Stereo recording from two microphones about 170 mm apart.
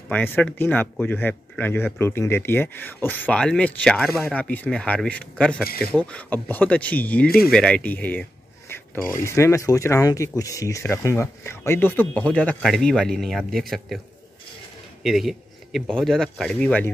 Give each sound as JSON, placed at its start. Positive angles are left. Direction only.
{"t": 0.1, "sound": "speech", "side_deg": 10}
{"t": 15.0, "sound": "speech", "side_deg": 0}